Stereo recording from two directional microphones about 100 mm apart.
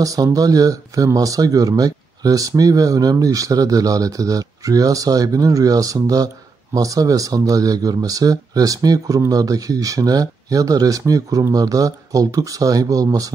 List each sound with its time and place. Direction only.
0.0 s speech: 35° right (ahead or behind)